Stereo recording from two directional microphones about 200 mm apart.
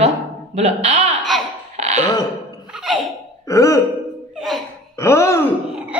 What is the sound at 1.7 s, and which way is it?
Burping, 35° right (ahead or behind).